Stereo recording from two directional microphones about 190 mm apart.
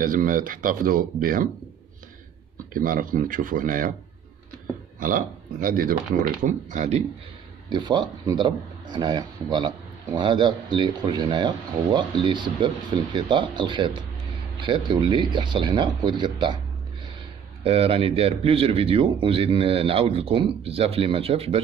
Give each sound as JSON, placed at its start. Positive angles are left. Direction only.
{"t": 0.0, "sound": "speech", "side_deg": -45}
{"t": 2.7, "sound": "speech", "side_deg": -45}
{"t": 5.0, "sound": "speech", "side_deg": -45}
{"t": 7.7, "sound": "speech", "side_deg": -25}
{"t": 17.6, "sound": "speech", "side_deg": -30}